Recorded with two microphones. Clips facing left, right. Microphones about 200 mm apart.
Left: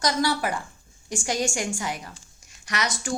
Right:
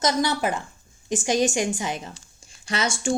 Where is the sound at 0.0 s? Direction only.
20° right (ahead or behind).